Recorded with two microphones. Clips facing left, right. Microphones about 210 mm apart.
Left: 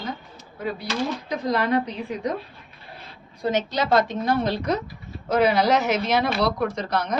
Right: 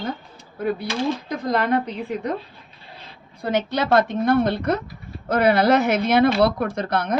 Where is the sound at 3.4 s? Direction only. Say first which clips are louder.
Right 1 dB; 60° right (ahead or behind).